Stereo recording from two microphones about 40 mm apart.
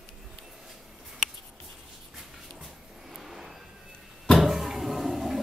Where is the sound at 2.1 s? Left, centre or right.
Centre.